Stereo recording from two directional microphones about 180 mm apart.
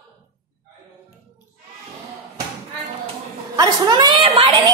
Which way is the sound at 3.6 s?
25° right (ahead or behind).